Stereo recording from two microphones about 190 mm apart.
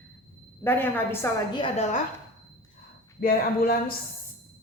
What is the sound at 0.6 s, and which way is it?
Speech, 10° left (ahead or behind).